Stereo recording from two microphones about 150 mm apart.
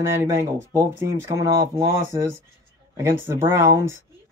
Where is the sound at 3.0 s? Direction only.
15° right (ahead or behind).